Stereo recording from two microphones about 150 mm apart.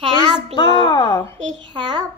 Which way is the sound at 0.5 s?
30° left (ahead or behind).